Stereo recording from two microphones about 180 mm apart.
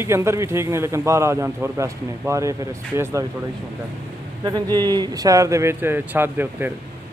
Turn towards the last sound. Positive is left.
turn(degrees=-10)  # may be behind; listen again after turning